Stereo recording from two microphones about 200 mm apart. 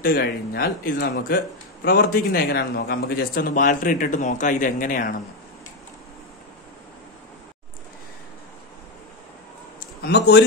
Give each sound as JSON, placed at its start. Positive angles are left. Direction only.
{"t": 0.0, "sound": "a man's voice", "side_deg": 50}
{"t": 10.0, "sound": "speech", "side_deg": 60}